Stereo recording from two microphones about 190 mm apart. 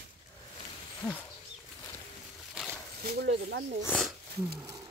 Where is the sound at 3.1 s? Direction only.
60° right (ahead or behind).